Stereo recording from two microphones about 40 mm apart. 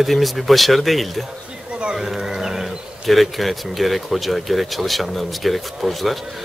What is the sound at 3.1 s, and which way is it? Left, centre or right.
Speech, centre.